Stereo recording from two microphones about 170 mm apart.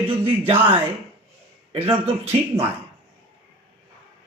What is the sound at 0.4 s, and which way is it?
Speech, 35° right (ahead or behind).